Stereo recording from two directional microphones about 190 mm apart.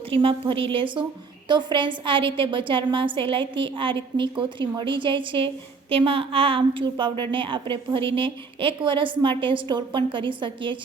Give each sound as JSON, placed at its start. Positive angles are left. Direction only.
{"t": 0.1, "sound": "a woman's voice", "side_deg": -30}